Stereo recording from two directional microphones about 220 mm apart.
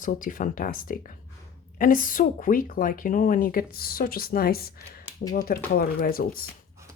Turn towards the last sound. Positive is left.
turn(degrees=40)  # may be behind; listen again after turning